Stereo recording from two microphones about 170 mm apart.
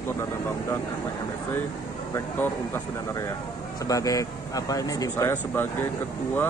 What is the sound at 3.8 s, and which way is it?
Speech, 20° left (ahead or behind).